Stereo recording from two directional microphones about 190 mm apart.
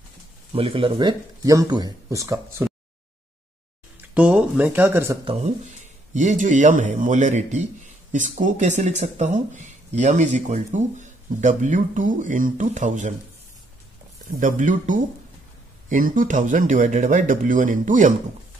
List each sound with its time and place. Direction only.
0.5 s speech: 30° right (ahead or behind); by 2.7 s 15° right (ahead or behind)
4.1 s speech: 5° right (ahead or behind)
5.2 s speech: 30° right (ahead or behind)
6.1 s speech: 40° right (ahead or behind)
14.4 s speech: 40° right (ahead or behind)